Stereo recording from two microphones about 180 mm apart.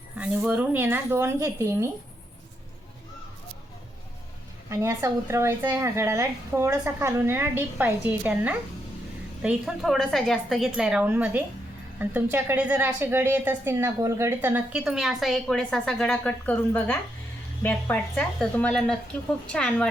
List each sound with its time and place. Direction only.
0.2 s a woman's voice: 5° right (ahead or behind)
4.7 s a woman's voice: 15° right (ahead or behind); by 19.9 s 5° left (ahead or behind)